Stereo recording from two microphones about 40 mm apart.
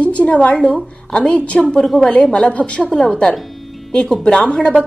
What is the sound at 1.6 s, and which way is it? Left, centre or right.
Speech, centre.